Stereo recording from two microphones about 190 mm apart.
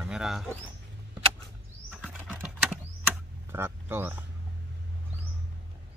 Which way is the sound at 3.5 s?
10° right (ahead or behind).